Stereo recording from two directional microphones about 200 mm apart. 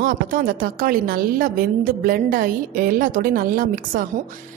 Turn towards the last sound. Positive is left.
turn(degrees=-45)  # may be behind; listen again after turning